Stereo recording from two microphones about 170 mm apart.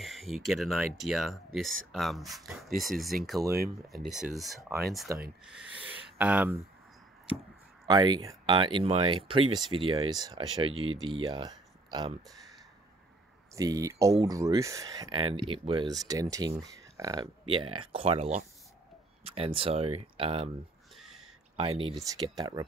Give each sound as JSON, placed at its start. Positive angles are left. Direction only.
{"t": 0.0, "sound": "speech", "side_deg": 0}
{"t": 7.8, "sound": "speech", "side_deg": -25}
{"t": 12.3, "sound": "speech", "side_deg": 0}
{"t": 13.6, "sound": "speech", "side_deg": -20}
{"t": 15.1, "sound": "speech", "side_deg": -30}
{"t": 21.0, "sound": "a sound", "side_deg": 0}
{"t": 21.5, "sound": "speech", "side_deg": -30}